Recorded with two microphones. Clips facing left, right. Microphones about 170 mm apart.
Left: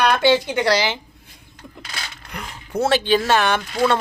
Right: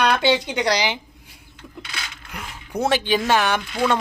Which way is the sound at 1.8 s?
40° left (ahead or behind).